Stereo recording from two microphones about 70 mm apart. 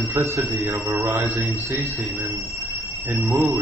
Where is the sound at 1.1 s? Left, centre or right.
Right.